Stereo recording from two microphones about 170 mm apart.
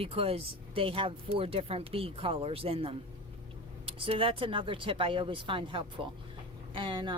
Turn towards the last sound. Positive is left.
turn(degrees=-30)  # may be behind; listen again after turning